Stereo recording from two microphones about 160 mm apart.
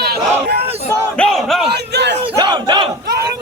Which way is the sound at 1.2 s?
5° left (ahead or behind).